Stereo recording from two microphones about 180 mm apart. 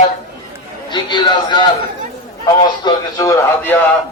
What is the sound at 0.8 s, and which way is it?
Speech, 25° left (ahead or behind).